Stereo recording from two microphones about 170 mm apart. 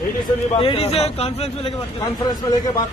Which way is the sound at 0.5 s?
35° left (ahead or behind).